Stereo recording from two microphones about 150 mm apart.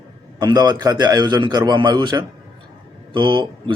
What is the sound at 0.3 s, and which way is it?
Speech, 30° right (ahead or behind).